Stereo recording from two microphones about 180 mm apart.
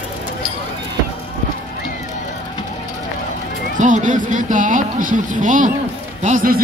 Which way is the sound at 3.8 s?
45° right (ahead or behind).